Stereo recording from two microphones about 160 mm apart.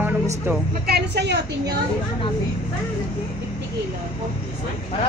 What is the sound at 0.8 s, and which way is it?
Speech, 90° right.